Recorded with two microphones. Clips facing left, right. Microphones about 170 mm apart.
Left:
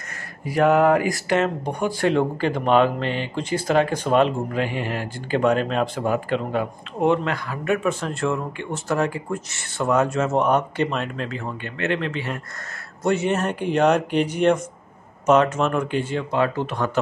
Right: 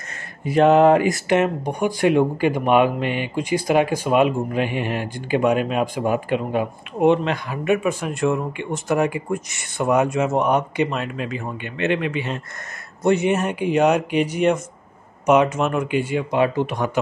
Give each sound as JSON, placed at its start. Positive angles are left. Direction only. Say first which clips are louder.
{"t": 0.5, "sound": "speech", "louder": "right 3 dB", "side_deg": -25}